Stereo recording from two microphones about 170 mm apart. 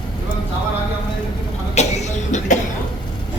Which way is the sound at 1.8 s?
40° left (ahead or behind).